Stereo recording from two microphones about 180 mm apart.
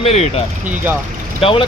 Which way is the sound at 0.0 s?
35° left (ahead or behind).